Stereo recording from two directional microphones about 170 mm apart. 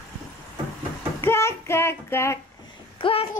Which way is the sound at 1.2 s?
15° left (ahead or behind).